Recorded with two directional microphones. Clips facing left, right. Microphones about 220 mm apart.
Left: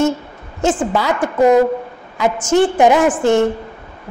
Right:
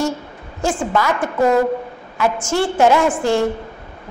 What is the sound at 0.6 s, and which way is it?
A woman's voice, 20° left (ahead or behind).